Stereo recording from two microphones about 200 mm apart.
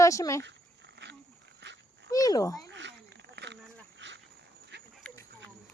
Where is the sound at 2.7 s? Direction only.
65° right (ahead or behind).